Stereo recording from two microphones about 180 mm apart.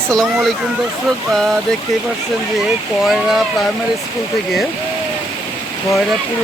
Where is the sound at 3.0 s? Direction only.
Centre (ahead or behind).